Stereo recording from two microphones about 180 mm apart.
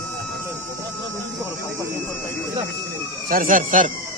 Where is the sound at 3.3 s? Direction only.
50° right (ahead or behind).